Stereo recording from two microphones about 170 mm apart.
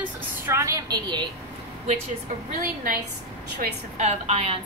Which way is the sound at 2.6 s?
55° right (ahead or behind).